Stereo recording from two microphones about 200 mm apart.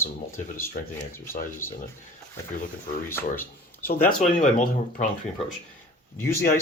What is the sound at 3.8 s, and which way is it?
Speech, 45° left (ahead or behind).